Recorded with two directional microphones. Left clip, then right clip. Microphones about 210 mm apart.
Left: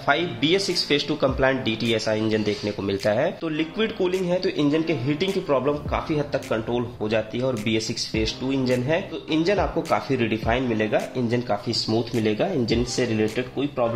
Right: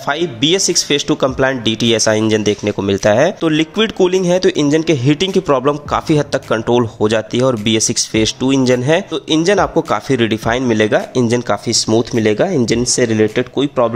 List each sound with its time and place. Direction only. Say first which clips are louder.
0.1 s speech: right 6 dB; 40° right (ahead or behind)